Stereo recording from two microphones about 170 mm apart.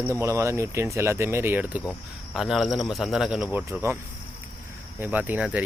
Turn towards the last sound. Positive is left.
turn(degrees=-10)  # may be behind; listen again after turning